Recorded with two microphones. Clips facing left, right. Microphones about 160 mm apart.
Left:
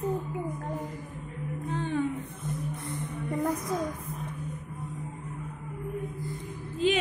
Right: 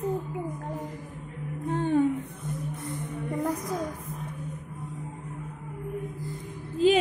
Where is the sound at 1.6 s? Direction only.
50° right (ahead or behind).